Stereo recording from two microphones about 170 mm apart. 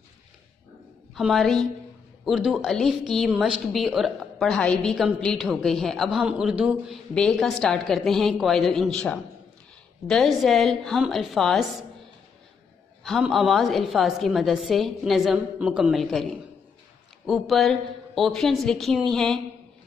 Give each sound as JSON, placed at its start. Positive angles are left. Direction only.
{"t": 1.1, "sound": "a woman's voice", "side_deg": 0}
{"t": 13.0, "sound": "a woman's voice", "side_deg": 0}
{"t": 17.3, "sound": "a woman's voice", "side_deg": 0}